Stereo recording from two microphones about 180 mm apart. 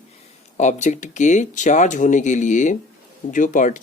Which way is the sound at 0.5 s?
40° left (ahead or behind).